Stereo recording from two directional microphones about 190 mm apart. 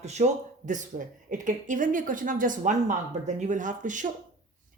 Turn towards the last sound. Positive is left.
turn(degrees=-40)  # may be behind; listen again after turning